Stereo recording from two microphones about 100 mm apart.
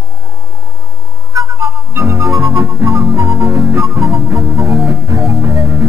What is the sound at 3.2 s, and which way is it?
Music, 50° right (ahead or behind).